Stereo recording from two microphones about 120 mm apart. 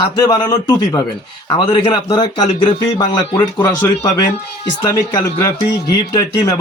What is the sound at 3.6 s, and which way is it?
Speech, 30° left (ahead or behind).